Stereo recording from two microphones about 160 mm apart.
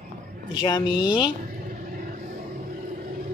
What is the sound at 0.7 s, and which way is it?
Speech, 30° left (ahead or behind).